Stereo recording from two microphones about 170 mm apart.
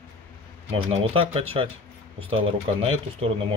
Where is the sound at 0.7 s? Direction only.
35° right (ahead or behind).